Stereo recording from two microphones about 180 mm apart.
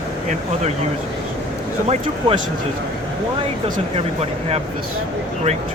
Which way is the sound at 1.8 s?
35° right (ahead or behind).